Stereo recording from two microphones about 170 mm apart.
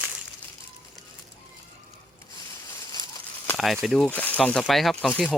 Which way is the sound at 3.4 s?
Centre (ahead or behind).